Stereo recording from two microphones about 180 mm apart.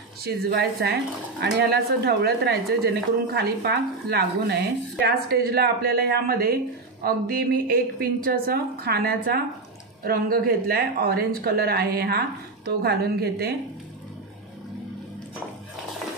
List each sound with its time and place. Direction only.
0.2 s a woman's voice: 60° right (ahead or behind)